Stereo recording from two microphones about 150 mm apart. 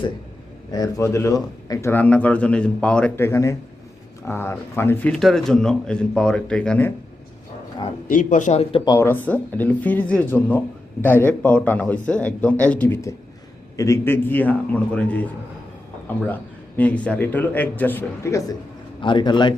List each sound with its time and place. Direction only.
0.7 s a man's voice: 25° left (ahead or behind)
8.1 s a man's voice: 55° left (ahead or behind)
8.7 s speech: 25° left (ahead or behind)
9.0 s a man's voice: 10° left (ahead or behind)
18.9 s a man's voice: 35° left (ahead or behind)